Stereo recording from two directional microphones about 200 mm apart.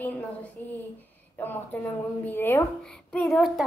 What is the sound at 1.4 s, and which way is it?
A woman's voice, 10° left (ahead or behind).